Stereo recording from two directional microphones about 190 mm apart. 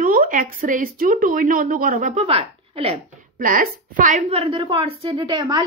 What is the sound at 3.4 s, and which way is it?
A woman's voice, 45° right (ahead or behind).